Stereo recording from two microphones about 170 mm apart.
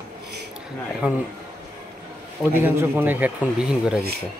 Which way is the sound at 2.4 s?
10° right (ahead or behind).